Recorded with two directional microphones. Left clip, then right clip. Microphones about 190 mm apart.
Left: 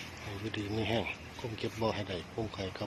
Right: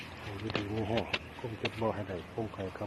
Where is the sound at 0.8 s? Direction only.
15° left (ahead or behind).